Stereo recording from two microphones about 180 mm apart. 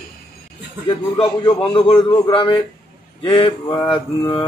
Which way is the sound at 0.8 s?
30° left (ahead or behind).